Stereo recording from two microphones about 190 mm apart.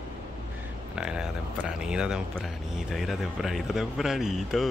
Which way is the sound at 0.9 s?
5° right (ahead or behind).